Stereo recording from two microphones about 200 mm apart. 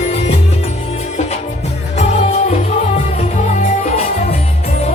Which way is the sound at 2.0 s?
35° left (ahead or behind).